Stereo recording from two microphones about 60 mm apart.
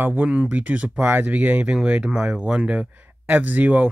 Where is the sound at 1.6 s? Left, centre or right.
Centre.